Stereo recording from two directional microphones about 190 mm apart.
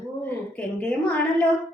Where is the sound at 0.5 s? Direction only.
5° left (ahead or behind).